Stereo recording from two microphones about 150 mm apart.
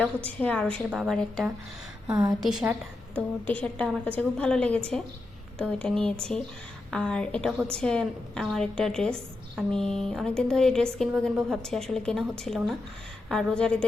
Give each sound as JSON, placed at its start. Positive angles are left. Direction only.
{"t": 0.3, "sound": "a woman's voice", "side_deg": 10}
{"t": 3.2, "sound": "a woman's voice", "side_deg": 10}